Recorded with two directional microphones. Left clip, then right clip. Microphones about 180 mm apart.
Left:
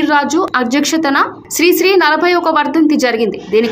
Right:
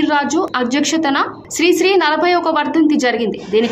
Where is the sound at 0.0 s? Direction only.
15° left (ahead or behind).